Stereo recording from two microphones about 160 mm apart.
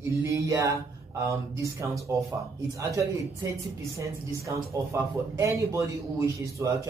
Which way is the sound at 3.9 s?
20° right (ahead or behind).